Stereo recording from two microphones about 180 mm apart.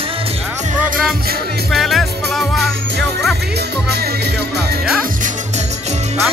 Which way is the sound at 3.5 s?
65° right (ahead or behind).